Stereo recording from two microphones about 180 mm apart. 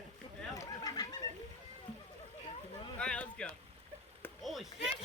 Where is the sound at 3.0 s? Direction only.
5° left (ahead or behind).